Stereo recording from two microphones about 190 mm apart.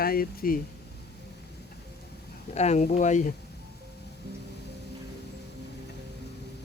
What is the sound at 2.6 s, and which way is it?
Speech, 35° left (ahead or behind).